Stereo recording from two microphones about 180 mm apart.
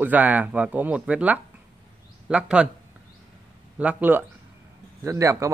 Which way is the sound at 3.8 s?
10° right (ahead or behind).